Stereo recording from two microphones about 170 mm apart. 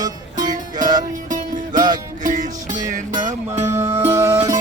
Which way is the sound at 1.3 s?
50° right (ahead or behind).